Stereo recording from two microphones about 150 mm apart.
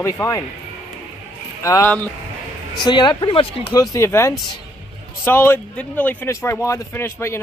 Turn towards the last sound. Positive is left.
turn(degrees=15)  # may be behind; listen again after turning